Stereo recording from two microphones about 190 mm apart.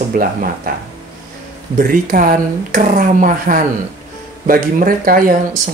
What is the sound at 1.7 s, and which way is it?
Speech, 45° right (ahead or behind).